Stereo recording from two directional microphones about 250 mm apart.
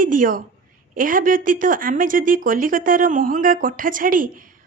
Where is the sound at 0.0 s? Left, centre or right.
Right.